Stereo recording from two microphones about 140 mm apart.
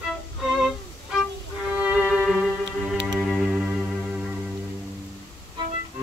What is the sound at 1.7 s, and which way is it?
Music, 10° right (ahead or behind).